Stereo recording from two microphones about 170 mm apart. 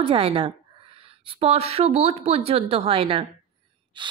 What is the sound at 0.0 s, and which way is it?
A woman's voice, 30° right (ahead or behind).